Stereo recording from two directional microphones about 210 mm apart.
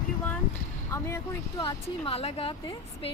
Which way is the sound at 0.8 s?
15° left (ahead or behind).